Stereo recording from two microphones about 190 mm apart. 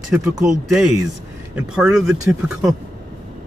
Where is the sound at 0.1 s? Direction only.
5° right (ahead or behind).